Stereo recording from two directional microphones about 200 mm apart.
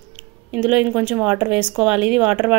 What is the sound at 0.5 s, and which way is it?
Speech, 5° right (ahead or behind).